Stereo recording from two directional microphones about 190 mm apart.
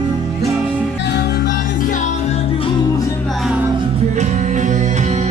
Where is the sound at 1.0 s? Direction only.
60° left (ahead or behind); by 2.7 s 30° left (ahead or behind).